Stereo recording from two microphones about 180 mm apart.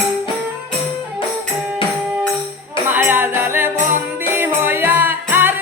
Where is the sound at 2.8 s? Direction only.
10° right (ahead or behind).